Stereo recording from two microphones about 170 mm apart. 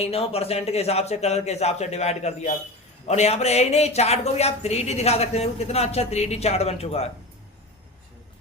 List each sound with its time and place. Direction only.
0.0 s speech: 35° left (ahead or behind)